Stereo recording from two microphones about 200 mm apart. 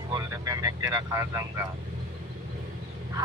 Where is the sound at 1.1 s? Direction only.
15° right (ahead or behind).